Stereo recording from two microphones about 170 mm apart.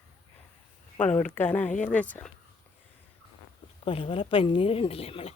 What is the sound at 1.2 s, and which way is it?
A woman's voice, 10° left (ahead or behind).